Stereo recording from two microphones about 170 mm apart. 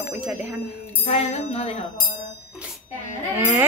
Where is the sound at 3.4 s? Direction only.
10° right (ahead or behind).